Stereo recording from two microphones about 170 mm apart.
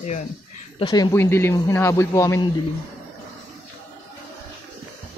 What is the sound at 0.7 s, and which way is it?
Speech, 30° left (ahead or behind).